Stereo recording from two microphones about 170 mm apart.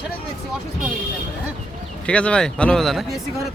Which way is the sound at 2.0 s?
5° left (ahead or behind).